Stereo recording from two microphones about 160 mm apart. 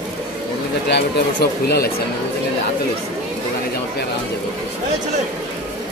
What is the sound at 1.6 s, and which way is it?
Speech, 75° left (ahead or behind).